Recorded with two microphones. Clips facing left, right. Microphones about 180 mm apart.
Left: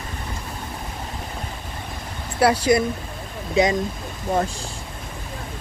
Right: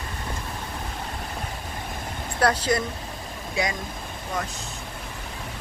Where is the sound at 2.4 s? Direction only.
10° left (ahead or behind).